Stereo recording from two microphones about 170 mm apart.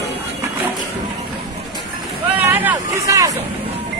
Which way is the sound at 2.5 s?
10° right (ahead or behind).